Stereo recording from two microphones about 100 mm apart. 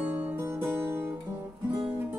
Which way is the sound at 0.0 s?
15° right (ahead or behind).